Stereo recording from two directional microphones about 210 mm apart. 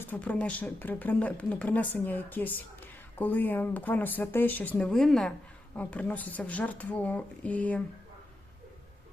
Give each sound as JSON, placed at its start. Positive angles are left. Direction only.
{"t": 0.0, "sound": "a woman's voice", "side_deg": 5}